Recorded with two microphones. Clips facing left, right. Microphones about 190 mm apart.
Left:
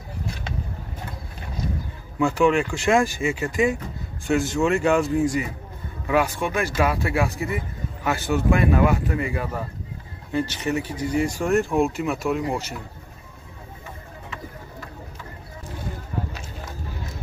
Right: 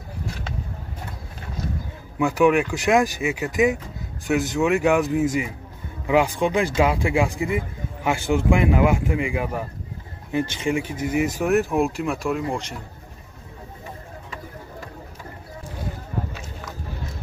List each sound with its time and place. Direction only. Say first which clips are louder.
2.1 s speech: right 1 dB; 5° right (ahead or behind)
4.3 s speech: even; 15° right (ahead or behind)
11.4 s speech: even; centre (ahead or behind)